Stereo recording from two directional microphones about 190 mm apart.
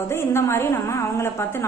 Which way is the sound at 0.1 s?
15° left (ahead or behind).